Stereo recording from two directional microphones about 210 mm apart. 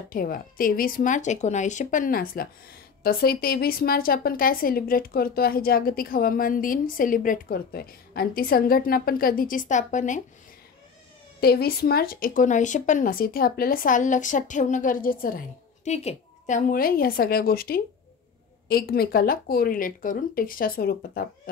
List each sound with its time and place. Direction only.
0.1 s a woman's voice: 45° left (ahead or behind)
11.4 s speech: 45° left (ahead or behind)